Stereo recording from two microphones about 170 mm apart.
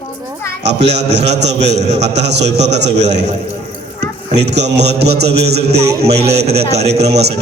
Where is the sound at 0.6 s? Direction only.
85° right.